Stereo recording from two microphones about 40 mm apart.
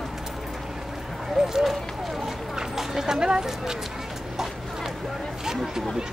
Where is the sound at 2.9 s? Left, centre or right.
Centre.